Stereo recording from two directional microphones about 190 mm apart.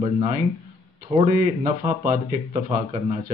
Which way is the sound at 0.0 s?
30° right (ahead or behind).